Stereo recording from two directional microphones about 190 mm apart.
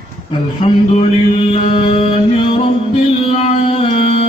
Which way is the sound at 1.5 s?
30° left (ahead or behind).